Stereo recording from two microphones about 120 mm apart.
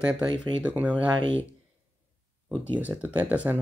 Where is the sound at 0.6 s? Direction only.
10° right (ahead or behind).